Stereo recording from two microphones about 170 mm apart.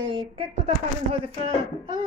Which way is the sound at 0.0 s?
30° right (ahead or behind).